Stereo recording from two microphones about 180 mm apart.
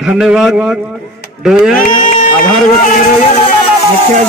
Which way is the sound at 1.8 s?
50° left (ahead or behind).